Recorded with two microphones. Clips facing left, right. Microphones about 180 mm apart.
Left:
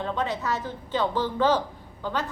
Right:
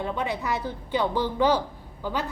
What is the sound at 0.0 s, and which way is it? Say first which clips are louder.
A woman's voice: even; 10° right (ahead or behind).